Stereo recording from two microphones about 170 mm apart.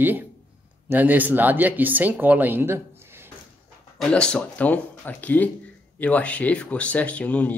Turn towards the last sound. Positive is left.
turn(degrees=10)  # may be behind; listen again after turning